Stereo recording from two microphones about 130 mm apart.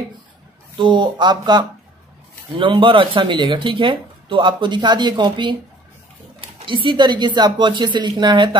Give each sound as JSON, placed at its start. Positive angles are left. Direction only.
{"t": 0.7, "sound": "speech", "side_deg": -35}
{"t": 6.6, "sound": "speech", "side_deg": -40}